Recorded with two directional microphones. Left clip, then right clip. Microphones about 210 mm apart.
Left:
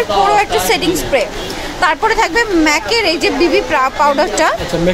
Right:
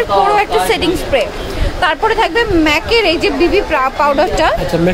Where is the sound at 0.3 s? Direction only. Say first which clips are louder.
Even; centre (ahead or behind).